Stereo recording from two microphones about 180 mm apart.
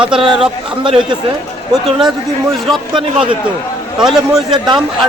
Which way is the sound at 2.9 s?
30° right (ahead or behind).